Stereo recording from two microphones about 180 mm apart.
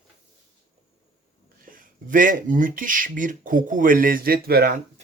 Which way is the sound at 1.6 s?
50° right (ahead or behind).